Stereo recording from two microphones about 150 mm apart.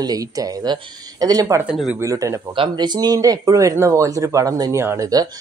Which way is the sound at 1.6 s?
5° right (ahead or behind).